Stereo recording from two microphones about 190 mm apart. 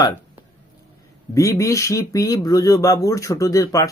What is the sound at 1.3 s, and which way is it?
Speech, 15° left (ahead or behind).